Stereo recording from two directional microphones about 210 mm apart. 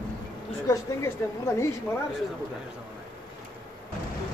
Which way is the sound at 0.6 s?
15° left (ahead or behind).